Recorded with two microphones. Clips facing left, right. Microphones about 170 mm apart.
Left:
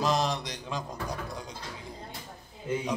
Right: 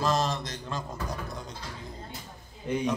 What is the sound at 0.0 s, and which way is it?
Mantra, 15° left (ahead or behind).